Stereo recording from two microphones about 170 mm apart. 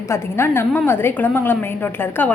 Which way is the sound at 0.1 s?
15° left (ahead or behind).